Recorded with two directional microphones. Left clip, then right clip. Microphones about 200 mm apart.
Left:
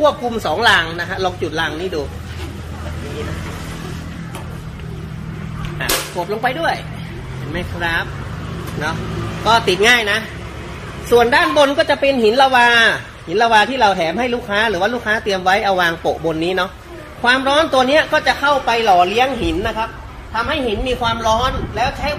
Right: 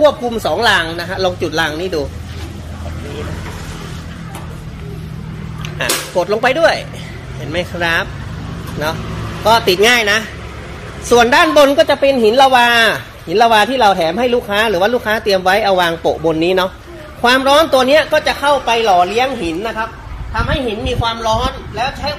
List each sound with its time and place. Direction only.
0.0 s speech: 35° right (ahead or behind); by 2.0 s 55° right (ahead or behind)
6.4 s speech: 60° right (ahead or behind)
9.4 s a woman's voice: 45° right (ahead or behind)
17.2 s speech: 50° right (ahead or behind)
18.4 s a woman's voice: 30° right (ahead or behind); by 22.1 s 5° right (ahead or behind)